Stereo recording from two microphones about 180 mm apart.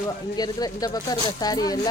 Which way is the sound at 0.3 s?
20° left (ahead or behind).